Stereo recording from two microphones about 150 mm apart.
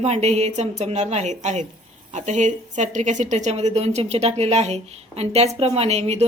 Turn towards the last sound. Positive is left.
turn(degrees=-45)  # may be behind; listen again after turning